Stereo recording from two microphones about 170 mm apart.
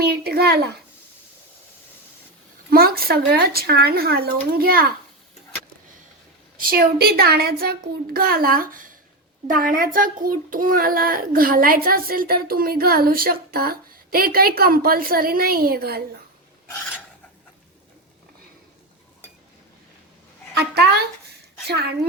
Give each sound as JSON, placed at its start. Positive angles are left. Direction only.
{"t": 0.3, "sound": "speech", "side_deg": -65}
{"t": 2.6, "sound": "a child's voice", "side_deg": -60}
{"t": 6.6, "sound": "a child's voice", "side_deg": -60}
{"t": 20.6, "sound": "speech", "side_deg": -70}